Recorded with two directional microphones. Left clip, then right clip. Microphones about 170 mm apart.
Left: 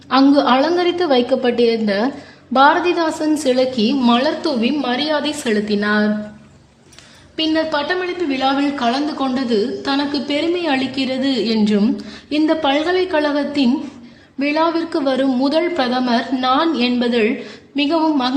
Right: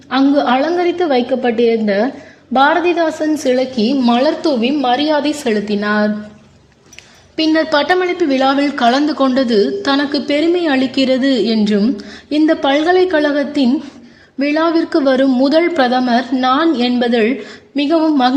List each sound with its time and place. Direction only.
0.1 s a woman's voice: 5° right (ahead or behind); by 6.1 s 25° right (ahead or behind)
7.3 s a woman's voice: 30° right (ahead or behind)
7.7 s a woman's voice: 45° right (ahead or behind); by 18.3 s 25° right (ahead or behind)